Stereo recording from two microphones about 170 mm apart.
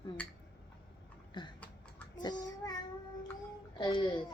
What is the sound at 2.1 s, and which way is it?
Child singing, 25° left (ahead or behind).